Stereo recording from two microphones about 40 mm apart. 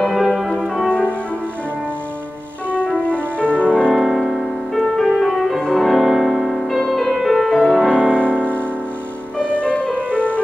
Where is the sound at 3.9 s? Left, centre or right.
Centre.